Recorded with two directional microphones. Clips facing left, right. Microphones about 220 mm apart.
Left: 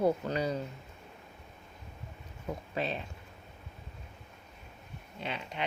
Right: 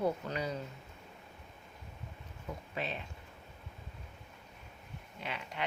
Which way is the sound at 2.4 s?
35° left (ahead or behind).